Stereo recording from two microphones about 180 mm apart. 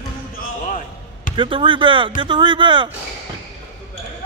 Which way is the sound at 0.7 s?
45° left (ahead or behind).